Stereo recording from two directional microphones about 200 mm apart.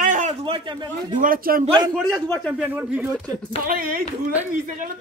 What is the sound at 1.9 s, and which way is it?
Speech, 5° left (ahead or behind).